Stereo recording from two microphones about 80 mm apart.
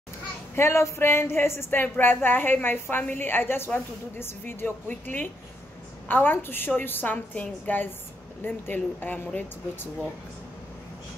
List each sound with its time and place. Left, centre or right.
0.6 s a woman's voice: left